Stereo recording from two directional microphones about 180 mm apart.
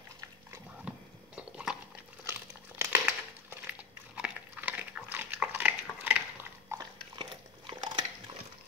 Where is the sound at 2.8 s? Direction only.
15° right (ahead or behind).